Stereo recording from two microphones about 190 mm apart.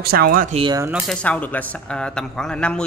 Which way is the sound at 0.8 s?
5° right (ahead or behind).